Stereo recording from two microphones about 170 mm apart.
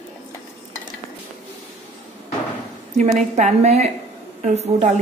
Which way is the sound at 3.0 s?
45° right (ahead or behind).